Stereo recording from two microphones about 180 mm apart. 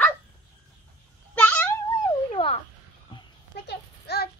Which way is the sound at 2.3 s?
35° left (ahead or behind).